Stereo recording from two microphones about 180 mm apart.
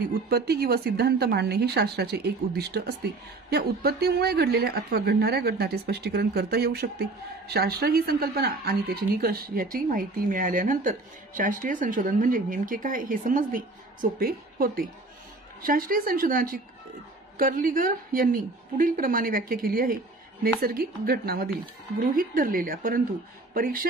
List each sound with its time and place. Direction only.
0.3 s a woman's voice: 60° right (ahead or behind)